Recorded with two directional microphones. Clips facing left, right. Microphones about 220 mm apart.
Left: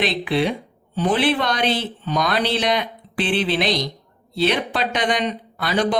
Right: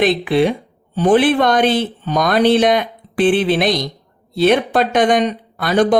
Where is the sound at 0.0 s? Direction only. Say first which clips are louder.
Right 6 dB; 50° right (ahead or behind).